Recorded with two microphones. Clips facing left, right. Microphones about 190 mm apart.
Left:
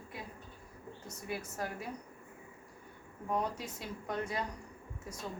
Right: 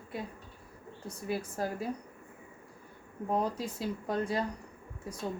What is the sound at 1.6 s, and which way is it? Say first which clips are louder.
Speech: right 5 dB; 35° right (ahead or behind).